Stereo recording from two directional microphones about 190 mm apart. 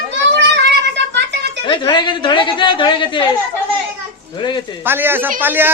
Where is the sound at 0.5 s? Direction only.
65° right (ahead or behind).